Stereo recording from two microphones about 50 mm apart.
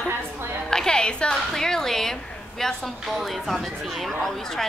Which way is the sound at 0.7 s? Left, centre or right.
Centre.